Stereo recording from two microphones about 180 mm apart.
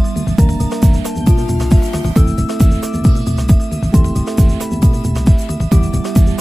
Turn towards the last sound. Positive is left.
turn(degrees=0)  # may be behind; listen again after turning